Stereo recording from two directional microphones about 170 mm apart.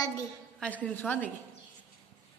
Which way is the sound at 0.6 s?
10° left (ahead or behind).